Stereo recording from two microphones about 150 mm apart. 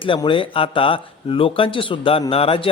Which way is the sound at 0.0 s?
35° left (ahead or behind).